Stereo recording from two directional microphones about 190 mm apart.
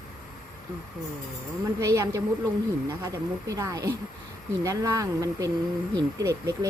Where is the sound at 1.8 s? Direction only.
15° right (ahead or behind).